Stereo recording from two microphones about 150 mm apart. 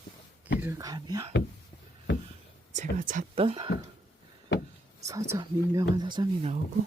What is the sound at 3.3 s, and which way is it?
Speech, 40° right (ahead or behind).